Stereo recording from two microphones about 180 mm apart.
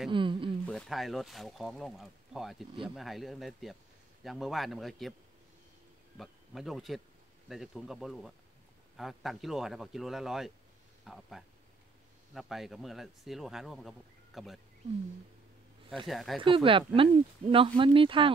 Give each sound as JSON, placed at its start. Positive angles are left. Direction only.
{"t": 0.1, "sound": "speech", "side_deg": -30}
{"t": 0.7, "sound": "speech", "side_deg": 0}
{"t": 6.1, "sound": "speech", "side_deg": 0}
{"t": 16.1, "sound": "speech", "side_deg": 0}
{"t": 16.3, "sound": "speech", "side_deg": -30}